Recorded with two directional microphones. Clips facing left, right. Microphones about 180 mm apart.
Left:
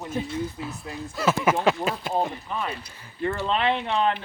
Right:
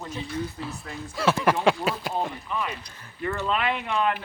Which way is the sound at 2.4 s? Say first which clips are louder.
Even; 35° left (ahead or behind).